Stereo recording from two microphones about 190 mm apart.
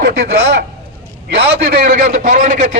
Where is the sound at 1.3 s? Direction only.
55° right (ahead or behind).